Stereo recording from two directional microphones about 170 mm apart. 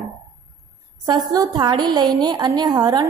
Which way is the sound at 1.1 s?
25° right (ahead or behind).